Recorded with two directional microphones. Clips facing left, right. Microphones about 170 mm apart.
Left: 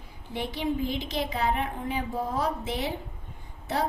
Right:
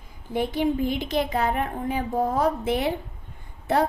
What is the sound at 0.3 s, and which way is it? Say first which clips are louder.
Speech: right 6 dB; 50° right (ahead or behind).